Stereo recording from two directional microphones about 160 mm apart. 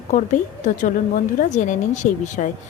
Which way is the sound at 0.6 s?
50° left (ahead or behind).